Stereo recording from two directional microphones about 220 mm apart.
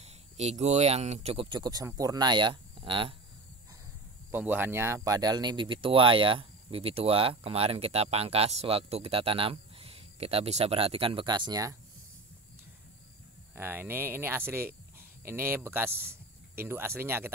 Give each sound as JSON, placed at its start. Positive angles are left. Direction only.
{"t": 0.0, "sound": "speech", "side_deg": -30}
{"t": 4.3, "sound": "speech", "side_deg": -10}
{"t": 13.6, "sound": "speech", "side_deg": -10}